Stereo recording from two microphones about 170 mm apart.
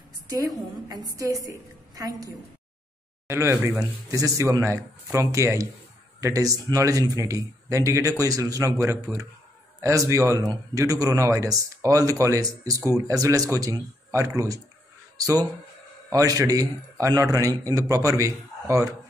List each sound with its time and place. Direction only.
0.3 s a woman's voice: 20° right (ahead or behind)